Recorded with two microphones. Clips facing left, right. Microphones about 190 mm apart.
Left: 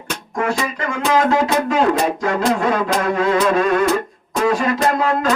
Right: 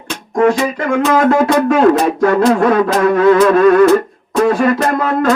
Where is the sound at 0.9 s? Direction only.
55° right (ahead or behind).